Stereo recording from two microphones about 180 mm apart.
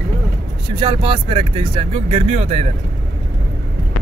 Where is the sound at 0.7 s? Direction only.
25° right (ahead or behind).